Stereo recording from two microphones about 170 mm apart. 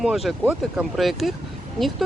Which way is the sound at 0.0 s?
Centre (ahead or behind).